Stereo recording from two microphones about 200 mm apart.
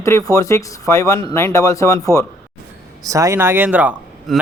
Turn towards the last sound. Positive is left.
turn(degrees=-5)  # may be behind; listen again after turning